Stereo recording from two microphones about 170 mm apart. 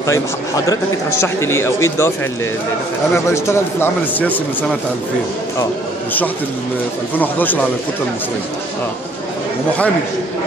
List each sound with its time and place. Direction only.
1.2 s a man's voice: 15° left (ahead or behind)
3.3 s a man's voice: 15° left (ahead or behind)
7.2 s a man's voice: 10° left (ahead or behind)